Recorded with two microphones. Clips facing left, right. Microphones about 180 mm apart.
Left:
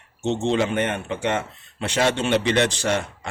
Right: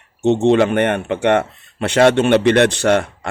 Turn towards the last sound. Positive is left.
turn(degrees=-65)  # may be behind; listen again after turning